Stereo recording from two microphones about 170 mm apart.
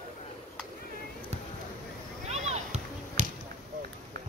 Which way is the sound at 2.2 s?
40° right (ahead or behind).